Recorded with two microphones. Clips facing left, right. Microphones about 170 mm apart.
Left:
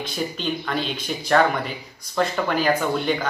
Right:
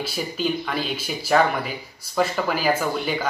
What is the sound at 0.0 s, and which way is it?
Speech, 5° right (ahead or behind).